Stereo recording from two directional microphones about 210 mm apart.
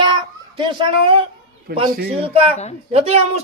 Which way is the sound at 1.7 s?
45° right (ahead or behind).